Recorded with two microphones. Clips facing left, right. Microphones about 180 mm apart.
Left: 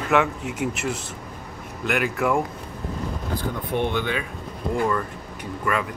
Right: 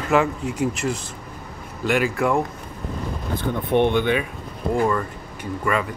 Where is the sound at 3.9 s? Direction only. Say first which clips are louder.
Right 5 dB; 20° right (ahead or behind).